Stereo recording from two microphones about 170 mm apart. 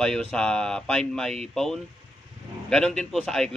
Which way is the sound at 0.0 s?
5° left (ahead or behind).